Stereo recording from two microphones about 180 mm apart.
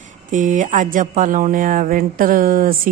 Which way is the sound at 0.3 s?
45° right (ahead or behind).